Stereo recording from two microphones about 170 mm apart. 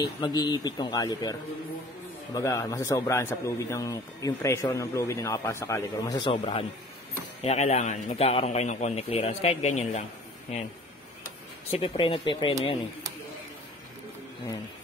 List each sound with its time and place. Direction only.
0.0 s a man's voice: 25° left (ahead or behind)
2.3 s a man's voice: 20° left (ahead or behind)
6.3 s a man's voice: 35° left (ahead or behind)
11.7 s a man's voice: 35° left (ahead or behind)